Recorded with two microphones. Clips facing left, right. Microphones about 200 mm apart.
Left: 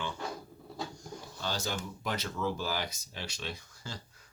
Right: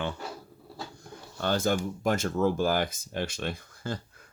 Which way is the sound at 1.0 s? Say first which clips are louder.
Right 7 dB; 55° right (ahead or behind).